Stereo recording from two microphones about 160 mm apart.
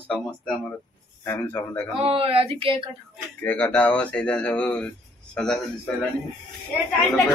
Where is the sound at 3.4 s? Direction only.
10° left (ahead or behind).